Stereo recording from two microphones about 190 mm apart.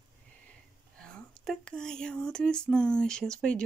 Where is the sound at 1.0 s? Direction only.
5° left (ahead or behind).